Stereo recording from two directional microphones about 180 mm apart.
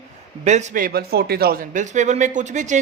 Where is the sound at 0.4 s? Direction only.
40° right (ahead or behind).